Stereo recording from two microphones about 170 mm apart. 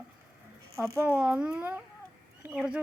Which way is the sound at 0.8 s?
15° right (ahead or behind).